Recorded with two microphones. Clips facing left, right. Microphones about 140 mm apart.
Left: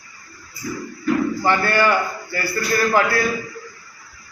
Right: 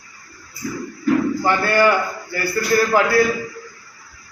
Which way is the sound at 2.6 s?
25° right (ahead or behind).